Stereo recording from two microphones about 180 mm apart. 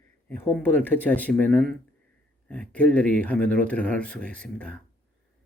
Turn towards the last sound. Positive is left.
turn(degrees=5)  # may be behind; listen again after turning